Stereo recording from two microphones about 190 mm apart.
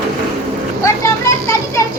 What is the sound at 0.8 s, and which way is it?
Children playing, 15° left (ahead or behind).